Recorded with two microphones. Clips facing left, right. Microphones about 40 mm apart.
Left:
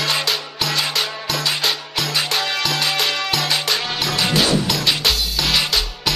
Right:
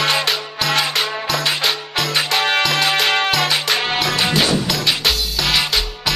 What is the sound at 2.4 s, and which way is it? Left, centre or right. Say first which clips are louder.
Music: right 4 dB; right.